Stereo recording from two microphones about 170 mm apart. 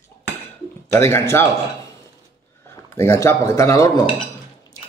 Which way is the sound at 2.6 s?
15° left (ahead or behind).